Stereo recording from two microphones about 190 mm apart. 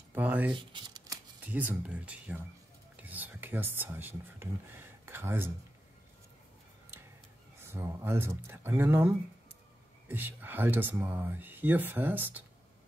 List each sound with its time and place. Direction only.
0.1 s speech: 10° right (ahead or behind)
0.6 s a sound: 25° right (ahead or behind)
1.4 s speech: 10° right (ahead or behind)
7.6 s speech: 15° right (ahead or behind)